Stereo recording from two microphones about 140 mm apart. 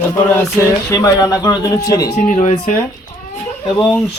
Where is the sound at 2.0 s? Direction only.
55° left (ahead or behind).